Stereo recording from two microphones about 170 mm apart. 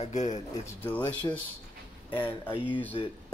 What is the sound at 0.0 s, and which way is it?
Speech, 45° left (ahead or behind).